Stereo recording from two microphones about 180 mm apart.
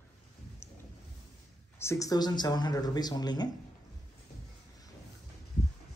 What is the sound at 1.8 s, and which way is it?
Speech, 15° left (ahead or behind).